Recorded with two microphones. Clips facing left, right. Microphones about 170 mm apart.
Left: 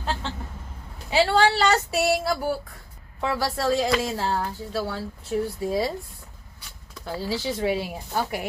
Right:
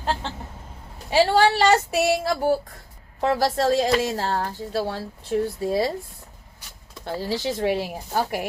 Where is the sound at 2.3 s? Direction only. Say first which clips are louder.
Right 4 dB; 40° right (ahead or behind).